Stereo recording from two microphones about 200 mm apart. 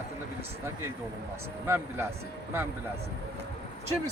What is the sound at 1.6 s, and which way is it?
Speech, 10° right (ahead or behind).